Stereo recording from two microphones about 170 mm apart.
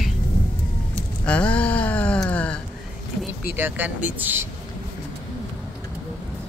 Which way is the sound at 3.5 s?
10° right (ahead or behind).